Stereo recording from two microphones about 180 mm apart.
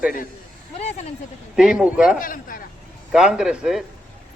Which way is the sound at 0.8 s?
40° left (ahead or behind).